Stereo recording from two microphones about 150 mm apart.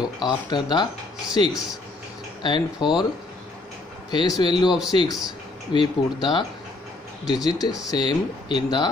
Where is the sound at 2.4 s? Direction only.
30° left (ahead or behind).